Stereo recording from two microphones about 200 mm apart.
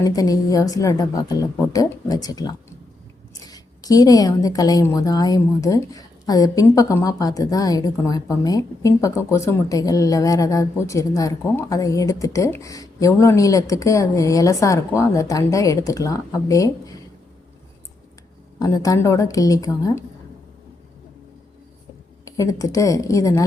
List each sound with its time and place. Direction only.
0.0 s speech: 15° left (ahead or behind)
18.6 s speech: 15° left (ahead or behind)
22.2 s speech: 15° left (ahead or behind)